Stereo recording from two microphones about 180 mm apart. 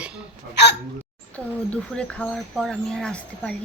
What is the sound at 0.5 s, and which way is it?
Speech, 70° left (ahead or behind).